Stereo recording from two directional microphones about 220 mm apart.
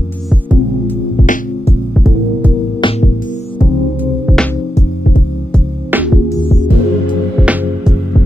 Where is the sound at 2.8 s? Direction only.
25° left (ahead or behind).